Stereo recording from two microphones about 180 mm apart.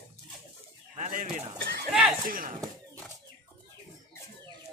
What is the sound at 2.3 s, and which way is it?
Speech, 50° right (ahead or behind).